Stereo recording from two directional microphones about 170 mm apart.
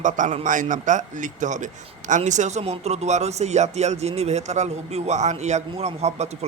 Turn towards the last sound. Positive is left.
turn(degrees=-40)  # may be behind; listen again after turning